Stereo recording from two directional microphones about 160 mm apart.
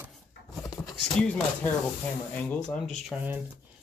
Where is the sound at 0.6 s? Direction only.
25° left (ahead or behind).